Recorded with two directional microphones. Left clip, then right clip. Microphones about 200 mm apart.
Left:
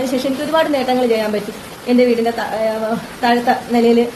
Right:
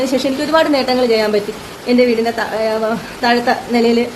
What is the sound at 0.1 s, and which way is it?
A woman's voice, 20° right (ahead or behind).